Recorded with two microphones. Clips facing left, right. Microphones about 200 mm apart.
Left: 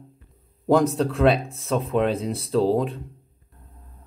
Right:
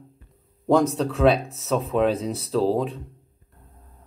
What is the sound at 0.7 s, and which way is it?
Speech, centre (ahead or behind).